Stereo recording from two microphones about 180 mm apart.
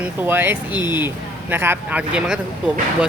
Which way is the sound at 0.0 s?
10° right (ahead or behind).